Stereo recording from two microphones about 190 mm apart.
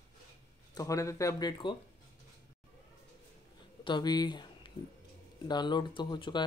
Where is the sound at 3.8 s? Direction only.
25° left (ahead or behind).